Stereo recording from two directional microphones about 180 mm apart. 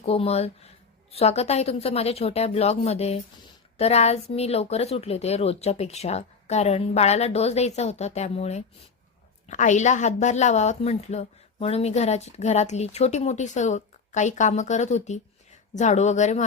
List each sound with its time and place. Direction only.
0.0 s a woman's voice: 35° left (ahead or behind)